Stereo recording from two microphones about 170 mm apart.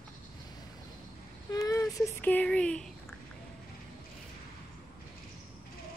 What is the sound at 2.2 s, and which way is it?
Speech, 10° left (ahead or behind).